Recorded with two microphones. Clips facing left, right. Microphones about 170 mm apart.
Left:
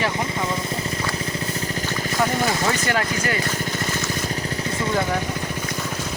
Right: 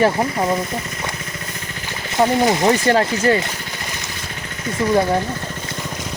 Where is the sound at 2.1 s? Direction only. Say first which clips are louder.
Right 7 dB; 20° right (ahead or behind).